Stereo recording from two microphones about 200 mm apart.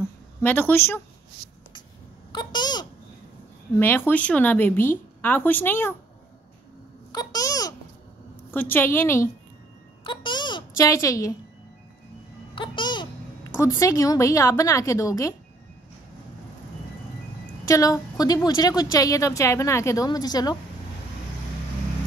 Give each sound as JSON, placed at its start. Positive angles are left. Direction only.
{"t": 0.4, "sound": "a woman's voice", "side_deg": 10}
{"t": 2.3, "sound": "a sound", "side_deg": 20}
{"t": 3.7, "sound": "a woman's voice", "side_deg": 10}
{"t": 7.1, "sound": "babbling", "side_deg": 20}
{"t": 8.5, "sound": "a woman's voice", "side_deg": 10}
{"t": 10.0, "sound": "a sound", "side_deg": 25}
{"t": 12.5, "sound": "music", "side_deg": 25}
{"t": 13.6, "sound": "a woman's voice", "side_deg": 15}
{"t": 17.6, "sound": "a woman's voice", "side_deg": 15}